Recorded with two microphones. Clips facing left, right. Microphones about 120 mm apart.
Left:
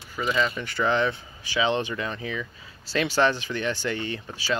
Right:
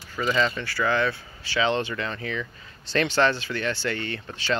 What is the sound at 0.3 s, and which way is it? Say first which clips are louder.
Speech: right 1 dB; 10° left (ahead or behind).